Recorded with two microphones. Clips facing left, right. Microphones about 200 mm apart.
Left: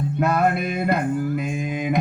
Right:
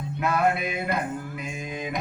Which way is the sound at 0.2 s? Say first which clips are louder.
Left 4 dB; 50° left (ahead or behind).